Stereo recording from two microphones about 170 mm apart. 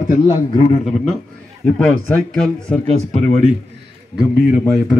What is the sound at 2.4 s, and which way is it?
Speech, 5° left (ahead or behind).